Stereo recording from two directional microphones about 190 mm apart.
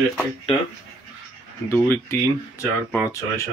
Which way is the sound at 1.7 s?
15° left (ahead or behind).